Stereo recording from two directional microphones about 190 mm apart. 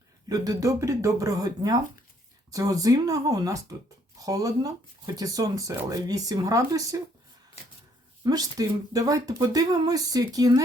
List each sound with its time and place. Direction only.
0.3 s speech: 20° right (ahead or behind)
8.2 s speech: 20° right (ahead or behind)